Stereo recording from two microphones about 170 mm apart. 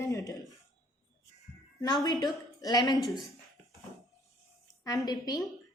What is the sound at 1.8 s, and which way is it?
A woman's voice, 25° left (ahead or behind).